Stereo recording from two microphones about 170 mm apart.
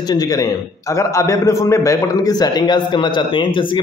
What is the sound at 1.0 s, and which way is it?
Speech, 20° left (ahead or behind).